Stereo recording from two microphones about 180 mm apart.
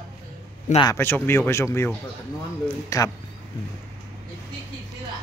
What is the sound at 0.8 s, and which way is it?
Speech, 15° left (ahead or behind).